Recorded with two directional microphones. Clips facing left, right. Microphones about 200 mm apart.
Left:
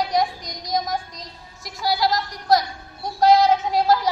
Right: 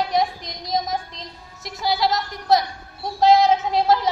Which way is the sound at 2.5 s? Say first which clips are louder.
Even; 25° right (ahead or behind).